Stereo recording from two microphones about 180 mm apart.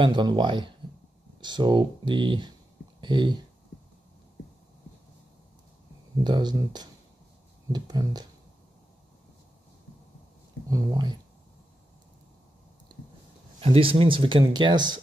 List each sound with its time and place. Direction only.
0.0 s speech: 25° right (ahead or behind)
6.2 s speech: 25° right (ahead or behind)
10.7 s speech: 20° right (ahead or behind)
13.6 s speech: 30° right (ahead or behind)